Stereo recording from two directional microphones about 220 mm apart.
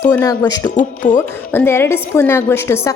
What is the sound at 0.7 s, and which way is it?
Speech, 35° left (ahead or behind).